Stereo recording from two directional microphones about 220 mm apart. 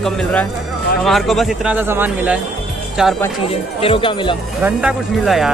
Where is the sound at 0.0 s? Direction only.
5° left (ahead or behind).